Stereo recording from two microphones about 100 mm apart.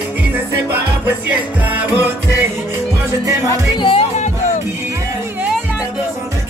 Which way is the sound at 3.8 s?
60° left (ahead or behind).